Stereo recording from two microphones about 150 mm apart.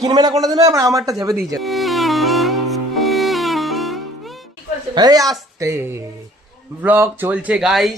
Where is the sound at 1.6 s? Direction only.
Centre (ahead or behind).